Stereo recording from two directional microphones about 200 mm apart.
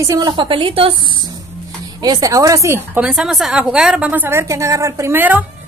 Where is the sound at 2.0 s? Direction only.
20° right (ahead or behind).